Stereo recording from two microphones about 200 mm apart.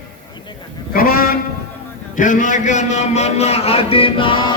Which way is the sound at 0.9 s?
45° left (ahead or behind).